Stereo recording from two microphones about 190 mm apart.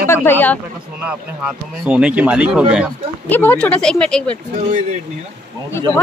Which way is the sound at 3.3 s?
10° left (ahead or behind).